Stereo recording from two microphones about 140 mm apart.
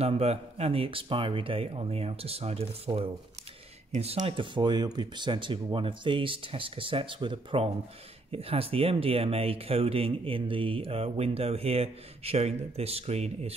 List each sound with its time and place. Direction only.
0.0 s speech: 45° right (ahead or behind)
4.2 s speech: 35° right (ahead or behind)